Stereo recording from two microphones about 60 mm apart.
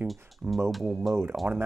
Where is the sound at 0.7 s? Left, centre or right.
Centre.